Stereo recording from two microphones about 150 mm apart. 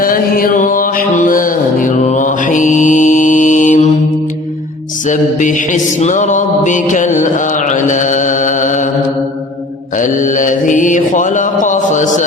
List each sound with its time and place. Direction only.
0.0 s a sound: 70° left (ahead or behind)
5.0 s mantra: 55° left (ahead or behind)
10.0 s mantra: 60° left (ahead or behind)